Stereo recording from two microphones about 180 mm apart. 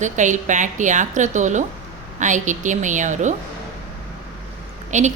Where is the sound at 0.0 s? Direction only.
45° right (ahead or behind).